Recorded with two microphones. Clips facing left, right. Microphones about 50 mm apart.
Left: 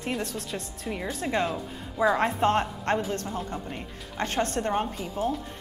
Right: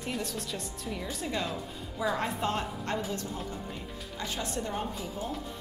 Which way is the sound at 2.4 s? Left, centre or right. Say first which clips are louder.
Left 8 dB; left.